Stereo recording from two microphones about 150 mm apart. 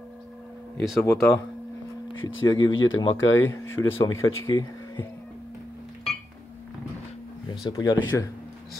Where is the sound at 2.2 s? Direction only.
30° left (ahead or behind).